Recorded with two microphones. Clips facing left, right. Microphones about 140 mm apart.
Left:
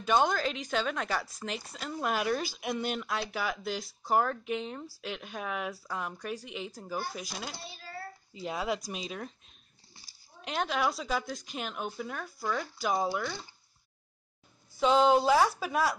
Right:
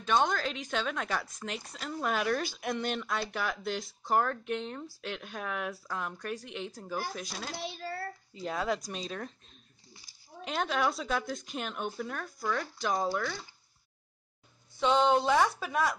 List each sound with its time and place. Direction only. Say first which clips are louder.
0.0 s a woman's voice: left 2 dB; 5° left (ahead or behind)
7.5 s a child's voice: right 8 dB; 90° right
8.4 s speech: right 1 dB; 10° left (ahead or behind)
10.4 s a woman's voice: even; centre (ahead or behind)
14.8 s a woman's voice: left 2 dB; 5° left (ahead or behind)